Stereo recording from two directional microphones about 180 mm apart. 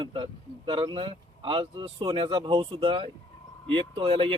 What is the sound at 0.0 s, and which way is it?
Speech, 25° right (ahead or behind).